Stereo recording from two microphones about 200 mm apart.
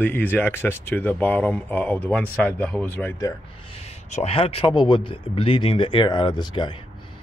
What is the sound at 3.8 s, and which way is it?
Speech, 35° left (ahead or behind).